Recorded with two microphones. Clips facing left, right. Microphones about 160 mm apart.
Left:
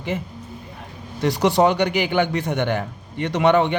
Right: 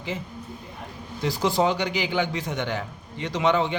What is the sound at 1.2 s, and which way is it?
A man's voice, 65° left (ahead or behind).